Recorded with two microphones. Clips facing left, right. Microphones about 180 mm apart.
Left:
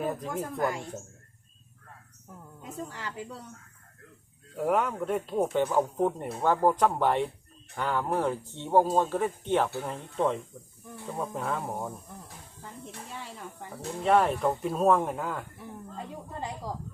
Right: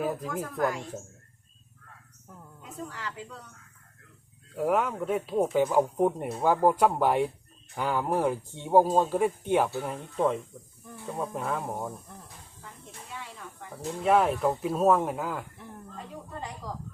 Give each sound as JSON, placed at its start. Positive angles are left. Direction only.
{"t": 0.0, "sound": "speech", "side_deg": -5}
{"t": 0.5, "sound": "a woman's voice", "side_deg": 25}
{"t": 2.8, "sound": "a woman's voice", "side_deg": 30}
{"t": 4.5, "sound": "speech", "side_deg": 0}
{"t": 14.0, "sound": "speech", "side_deg": -5}